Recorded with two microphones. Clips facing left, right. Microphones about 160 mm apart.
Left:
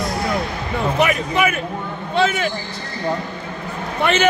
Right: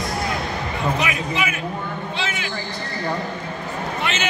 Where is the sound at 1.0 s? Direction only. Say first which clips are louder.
Left 6 dB; 55° left (ahead or behind).